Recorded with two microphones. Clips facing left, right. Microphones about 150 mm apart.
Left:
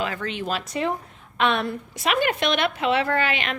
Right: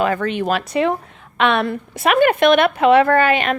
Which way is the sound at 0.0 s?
55° right (ahead or behind).